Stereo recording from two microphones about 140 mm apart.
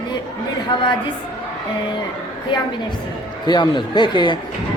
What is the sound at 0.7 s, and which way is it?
Speech, 30° left (ahead or behind).